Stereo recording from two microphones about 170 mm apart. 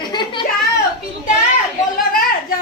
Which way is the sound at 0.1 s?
25° left (ahead or behind).